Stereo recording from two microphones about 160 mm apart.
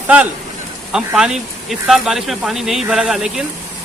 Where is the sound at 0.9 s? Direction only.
5° right (ahead or behind).